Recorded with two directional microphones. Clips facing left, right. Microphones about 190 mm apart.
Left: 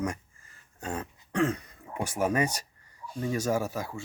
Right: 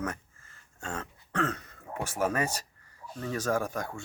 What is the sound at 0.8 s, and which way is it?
Throat clearing, 15° left (ahead or behind).